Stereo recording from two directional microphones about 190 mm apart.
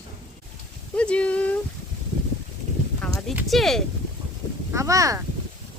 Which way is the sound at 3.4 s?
Centre (ahead or behind).